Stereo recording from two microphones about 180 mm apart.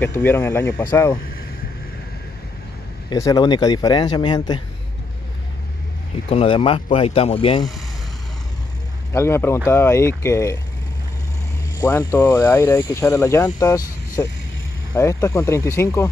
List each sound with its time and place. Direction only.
0.0 s speech: 10° left (ahead or behind)
3.1 s speech: 20° left (ahead or behind)
6.3 s speech: 30° left (ahead or behind)
9.1 s speech: 15° left (ahead or behind)
11.8 s speech: 15° left (ahead or behind)